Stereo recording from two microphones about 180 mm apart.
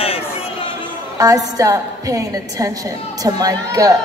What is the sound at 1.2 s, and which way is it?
A woman's voice, 20° right (ahead or behind).